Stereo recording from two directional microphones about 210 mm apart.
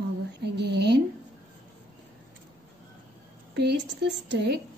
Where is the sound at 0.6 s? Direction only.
55° right (ahead or behind).